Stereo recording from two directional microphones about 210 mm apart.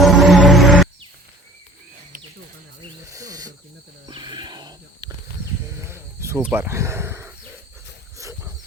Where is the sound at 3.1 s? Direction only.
15° right (ahead or behind).